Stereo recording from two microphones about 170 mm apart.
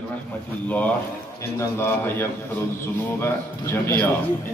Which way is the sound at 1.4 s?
15° left (ahead or behind).